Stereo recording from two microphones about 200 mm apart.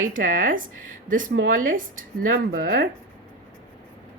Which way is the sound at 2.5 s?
50° right (ahead or behind).